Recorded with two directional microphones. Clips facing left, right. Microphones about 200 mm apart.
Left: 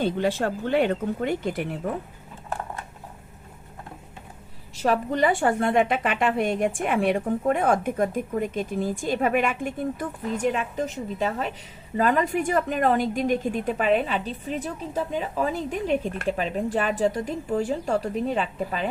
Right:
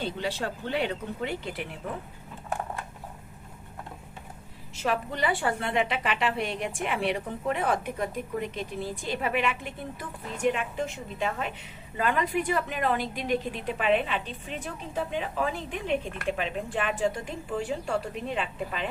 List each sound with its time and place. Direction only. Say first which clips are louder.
0.0 s a woman's voice: left 7 dB; 50° left (ahead or behind)
4.8 s a woman's voice: left 6 dB; 45° left (ahead or behind)